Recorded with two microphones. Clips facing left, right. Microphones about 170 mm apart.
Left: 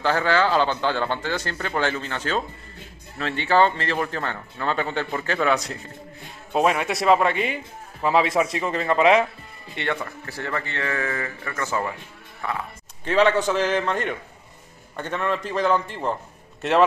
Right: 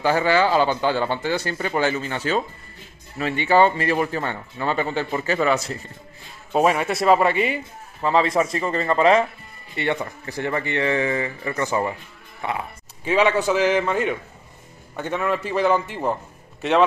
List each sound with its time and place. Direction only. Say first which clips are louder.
0.0 s speech: right 2 dB; 10° right (ahead or behind)
8.0 s speech: right 1 dB; 5° left (ahead or behind)
9.8 s speech: right 3 dB; 15° right (ahead or behind)
13.0 s speech: even; 10° right (ahead or behind)